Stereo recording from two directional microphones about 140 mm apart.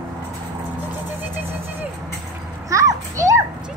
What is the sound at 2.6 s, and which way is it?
Children playing, 25° right (ahead or behind).